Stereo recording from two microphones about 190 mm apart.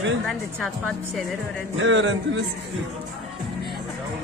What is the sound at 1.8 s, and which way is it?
Speech, 75° right (ahead or behind).